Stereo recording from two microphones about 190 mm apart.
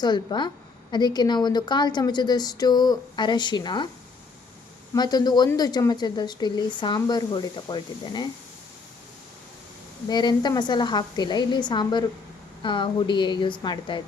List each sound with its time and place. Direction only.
0.0 s a woman's voice: 25° left (ahead or behind)
4.9 s a woman's voice: 20° left (ahead or behind)
10.1 s a woman's voice: 20° left (ahead or behind)